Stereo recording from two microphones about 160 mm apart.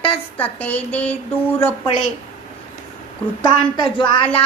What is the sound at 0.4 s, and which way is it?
Speech, 10° left (ahead or behind).